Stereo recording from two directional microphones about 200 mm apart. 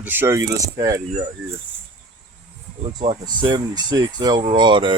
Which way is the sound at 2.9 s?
25° right (ahead or behind).